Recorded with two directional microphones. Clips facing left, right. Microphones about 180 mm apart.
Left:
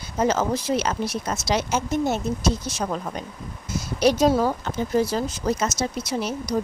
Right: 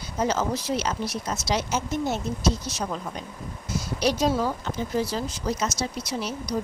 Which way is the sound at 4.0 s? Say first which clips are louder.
Left 5 dB; 50° left (ahead or behind).